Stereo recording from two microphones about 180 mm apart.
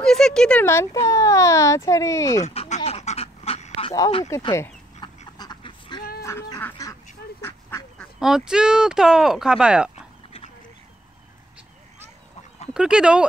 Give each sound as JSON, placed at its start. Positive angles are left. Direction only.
{"t": 0.0, "sound": "speech", "side_deg": 5}
{"t": 2.4, "sound": "duck", "side_deg": 35}
{"t": 4.3, "sound": "duck", "side_deg": 20}
{"t": 6.2, "sound": "duck", "side_deg": 15}
{"t": 8.2, "sound": "speech", "side_deg": 0}
{"t": 12.7, "sound": "speech", "side_deg": -5}